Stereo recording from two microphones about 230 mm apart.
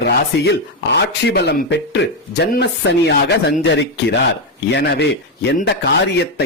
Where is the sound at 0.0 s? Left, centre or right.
Left.